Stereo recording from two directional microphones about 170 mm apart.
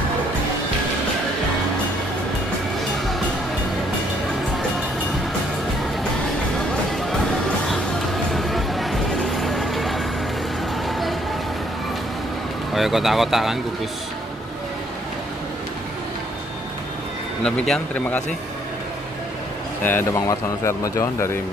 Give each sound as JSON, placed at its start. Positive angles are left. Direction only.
{"t": 8.3, "sound": "a sound", "side_deg": 0}
{"t": 10.9, "sound": "vehicle", "side_deg": 0}
{"t": 12.7, "sound": "speech", "side_deg": 0}
{"t": 17.4, "sound": "speech", "side_deg": 5}
{"t": 19.8, "sound": "speech", "side_deg": 10}